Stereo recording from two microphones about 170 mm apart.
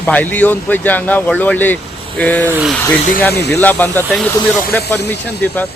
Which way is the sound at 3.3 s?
75° left (ahead or behind).